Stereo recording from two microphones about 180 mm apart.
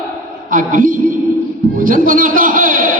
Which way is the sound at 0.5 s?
50° right (ahead or behind).